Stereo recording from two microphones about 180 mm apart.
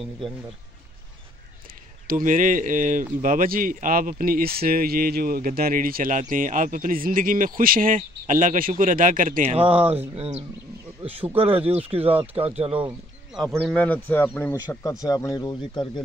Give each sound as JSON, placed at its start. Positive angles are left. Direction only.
{"t": 2.0, "sound": "speech", "side_deg": -50}
{"t": 11.2, "sound": "speech", "side_deg": -10}
{"t": 11.5, "sound": "speech", "side_deg": -35}
{"t": 12.7, "sound": "speech", "side_deg": -5}